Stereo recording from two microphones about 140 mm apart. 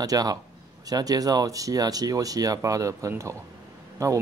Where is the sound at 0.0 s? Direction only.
25° right (ahead or behind).